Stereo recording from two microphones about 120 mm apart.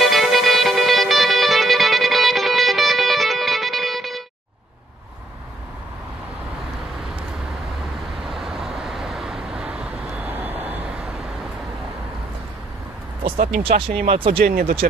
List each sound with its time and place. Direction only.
0.0 s music: centre (ahead or behind)
8.2 s vehicle: centre (ahead or behind)
13.2 s speech: 50° right (ahead or behind)